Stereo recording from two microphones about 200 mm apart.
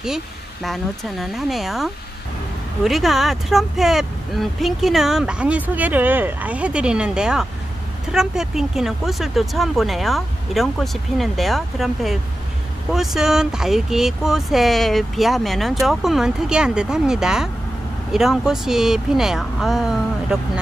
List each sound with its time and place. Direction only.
0.7 s speech: centre (ahead or behind)